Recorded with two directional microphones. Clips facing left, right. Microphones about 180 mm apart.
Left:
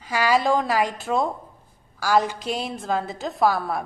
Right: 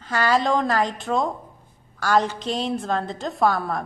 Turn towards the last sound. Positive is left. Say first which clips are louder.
# even
turn(degrees=5)  # may be behind; listen again after turning